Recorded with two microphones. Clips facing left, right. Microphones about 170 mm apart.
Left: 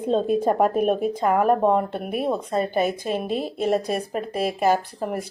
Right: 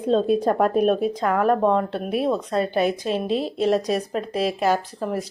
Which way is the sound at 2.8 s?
50° left (ahead or behind).